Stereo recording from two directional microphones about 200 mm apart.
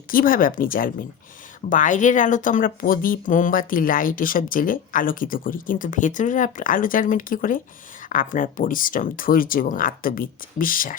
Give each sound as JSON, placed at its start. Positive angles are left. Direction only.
{"t": 0.1, "sound": "speech", "side_deg": 45}